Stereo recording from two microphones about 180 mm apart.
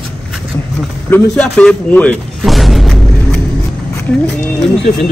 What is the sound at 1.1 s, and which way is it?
Speech, 5° left (ahead or behind).